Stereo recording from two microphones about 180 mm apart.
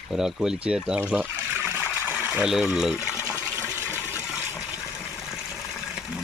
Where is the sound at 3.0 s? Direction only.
15° left (ahead or behind).